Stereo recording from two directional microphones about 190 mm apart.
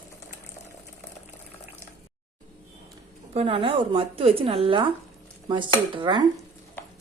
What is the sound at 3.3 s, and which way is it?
Speech, 30° right (ahead or behind).